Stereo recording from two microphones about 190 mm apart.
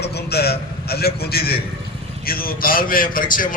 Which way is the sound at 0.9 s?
55° left (ahead or behind).